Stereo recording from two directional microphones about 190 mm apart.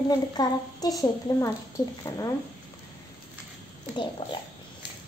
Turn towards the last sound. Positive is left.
turn(degrees=25)  # may be behind; listen again after turning